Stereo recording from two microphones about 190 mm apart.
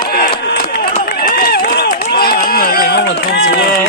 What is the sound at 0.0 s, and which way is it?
Run, 55° left (ahead or behind).